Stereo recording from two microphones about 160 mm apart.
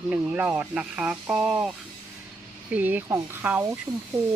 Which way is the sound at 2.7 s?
10° right (ahead or behind).